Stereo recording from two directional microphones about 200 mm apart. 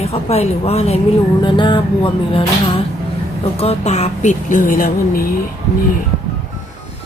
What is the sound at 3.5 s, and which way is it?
A woman's voice, 30° left (ahead or behind).